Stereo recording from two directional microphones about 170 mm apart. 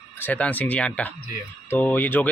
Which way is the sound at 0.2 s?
10° left (ahead or behind).